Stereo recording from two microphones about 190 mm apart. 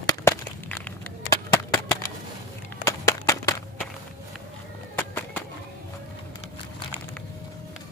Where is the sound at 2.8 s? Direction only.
15° left (ahead or behind).